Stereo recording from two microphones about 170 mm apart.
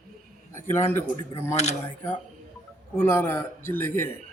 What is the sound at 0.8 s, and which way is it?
Speech, 15° left (ahead or behind).